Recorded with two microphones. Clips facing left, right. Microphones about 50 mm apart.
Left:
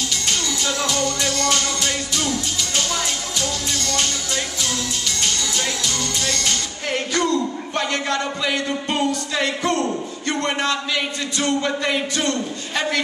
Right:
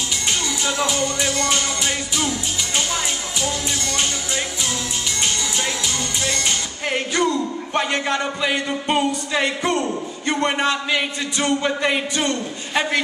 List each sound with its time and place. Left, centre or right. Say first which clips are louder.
0.3 s music: right 1 dB; centre
2.9 s speech: even; centre
6.2 s speech: right 1 dB; centre